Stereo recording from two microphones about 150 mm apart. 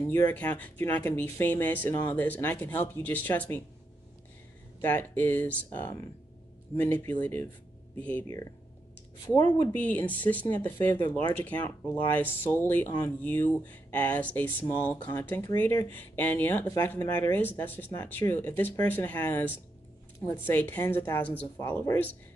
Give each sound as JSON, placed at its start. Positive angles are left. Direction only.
{"t": 0.1, "sound": "speech", "side_deg": 15}
{"t": 4.8, "sound": "speech", "side_deg": 10}
{"t": 9.2, "sound": "speech", "side_deg": 25}
{"t": 9.8, "sound": "speech", "side_deg": 10}